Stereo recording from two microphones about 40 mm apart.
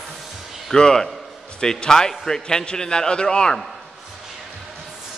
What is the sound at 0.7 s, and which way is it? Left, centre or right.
A man's voice, centre.